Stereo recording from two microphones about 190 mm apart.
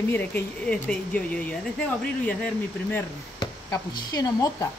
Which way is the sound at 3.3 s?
20° left (ahead or behind).